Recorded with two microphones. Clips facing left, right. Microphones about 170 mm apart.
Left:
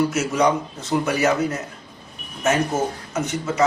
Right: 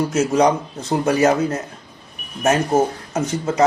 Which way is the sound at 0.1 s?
35° right (ahead or behind).